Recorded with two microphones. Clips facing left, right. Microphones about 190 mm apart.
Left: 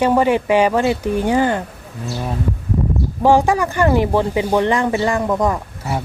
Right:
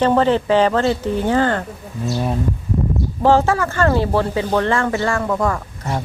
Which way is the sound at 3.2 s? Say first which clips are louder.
Left 1 dB; 15° left (ahead or behind).